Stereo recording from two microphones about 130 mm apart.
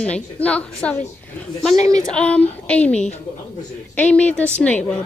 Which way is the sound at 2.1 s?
10° left (ahead or behind).